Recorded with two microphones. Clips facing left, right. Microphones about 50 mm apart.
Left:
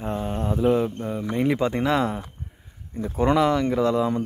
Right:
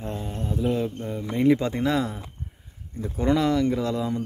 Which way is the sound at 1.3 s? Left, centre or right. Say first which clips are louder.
Right 3 dB; centre.